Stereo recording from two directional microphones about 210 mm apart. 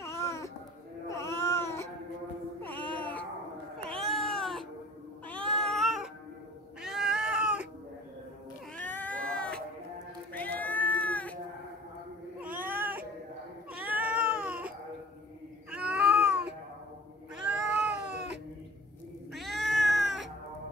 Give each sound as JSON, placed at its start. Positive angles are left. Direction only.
{"t": 0.0, "sound": "a sound", "side_deg": 15}
{"t": 1.0, "sound": "baby cry", "side_deg": 15}
{"t": 2.6, "sound": "music", "side_deg": 5}
{"t": 3.8, "sound": "cat", "side_deg": 5}
{"t": 8.7, "sound": "cat", "side_deg": 10}
{"t": 12.4, "sound": "cat", "side_deg": -10}
{"t": 15.7, "sound": "cat", "side_deg": -5}
{"t": 18.0, "sound": "cat", "side_deg": -55}
{"t": 19.3, "sound": "cat", "side_deg": 0}
{"t": 19.9, "sound": "cat", "side_deg": -55}